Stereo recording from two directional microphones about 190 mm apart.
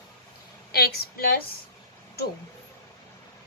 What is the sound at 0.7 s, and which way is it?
Speech, 55° left (ahead or behind).